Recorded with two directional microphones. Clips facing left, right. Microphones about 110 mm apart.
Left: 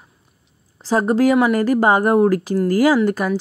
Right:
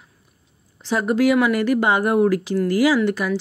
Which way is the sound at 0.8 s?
35° left (ahead or behind).